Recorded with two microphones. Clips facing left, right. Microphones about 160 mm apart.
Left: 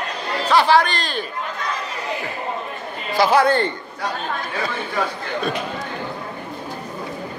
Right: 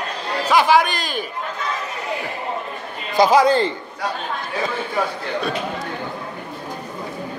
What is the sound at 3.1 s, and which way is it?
Speech, 15° right (ahead or behind).